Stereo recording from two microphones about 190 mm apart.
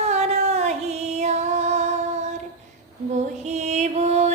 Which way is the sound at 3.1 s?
35° right (ahead or behind).